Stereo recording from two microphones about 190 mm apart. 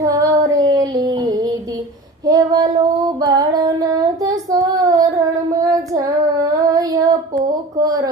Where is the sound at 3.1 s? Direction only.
20° right (ahead or behind).